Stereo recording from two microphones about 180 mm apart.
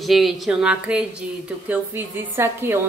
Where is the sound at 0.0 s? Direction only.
Centre (ahead or behind).